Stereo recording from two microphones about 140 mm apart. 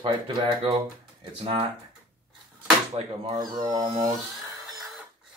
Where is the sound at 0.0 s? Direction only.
35° right (ahead or behind).